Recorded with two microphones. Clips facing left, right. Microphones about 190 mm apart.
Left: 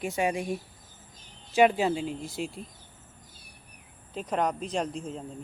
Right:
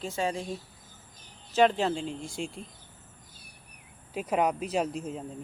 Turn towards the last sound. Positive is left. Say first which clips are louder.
# right 1 dB
turn(degrees=-5)  # may be behind; listen again after turning